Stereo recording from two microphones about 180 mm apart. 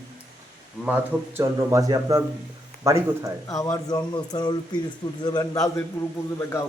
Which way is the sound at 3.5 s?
20° left (ahead or behind).